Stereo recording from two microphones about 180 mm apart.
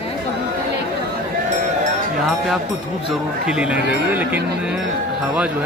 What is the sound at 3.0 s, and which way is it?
Speech, 5° right (ahead or behind).